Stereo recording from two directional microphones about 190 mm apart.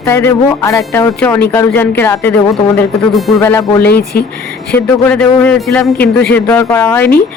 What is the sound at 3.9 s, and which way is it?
Speech, 55° left (ahead or behind).